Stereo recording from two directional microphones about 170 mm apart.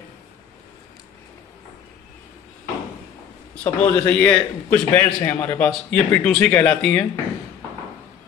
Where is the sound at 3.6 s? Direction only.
10° left (ahead or behind).